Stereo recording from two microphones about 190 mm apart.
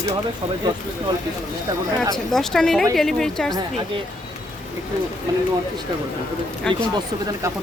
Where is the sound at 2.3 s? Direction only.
Centre (ahead or behind).